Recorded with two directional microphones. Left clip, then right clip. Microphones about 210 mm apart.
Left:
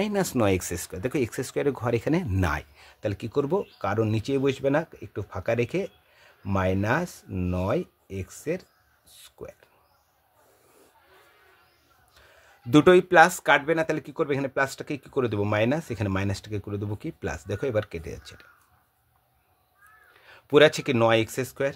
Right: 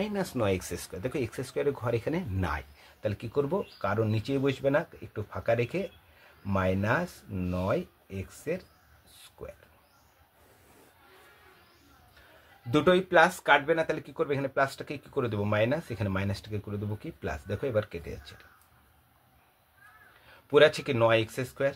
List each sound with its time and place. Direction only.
0.0 s speech: 55° left (ahead or behind)
9.1 s a sound: 40° left (ahead or behind)
12.7 s speech: 55° left (ahead or behind)
20.2 s speech: 45° left (ahead or behind)